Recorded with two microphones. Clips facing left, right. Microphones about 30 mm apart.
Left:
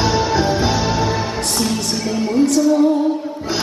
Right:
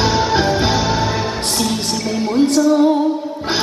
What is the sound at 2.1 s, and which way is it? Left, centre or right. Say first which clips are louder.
Music: right 1 dB; right.